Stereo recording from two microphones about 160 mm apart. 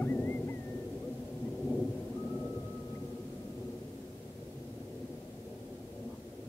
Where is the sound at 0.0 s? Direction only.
15° left (ahead or behind).